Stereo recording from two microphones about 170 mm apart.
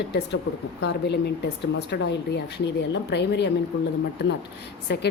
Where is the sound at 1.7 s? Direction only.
90° left.